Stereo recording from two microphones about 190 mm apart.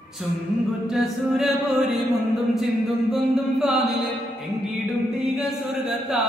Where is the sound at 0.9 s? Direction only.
Centre (ahead or behind).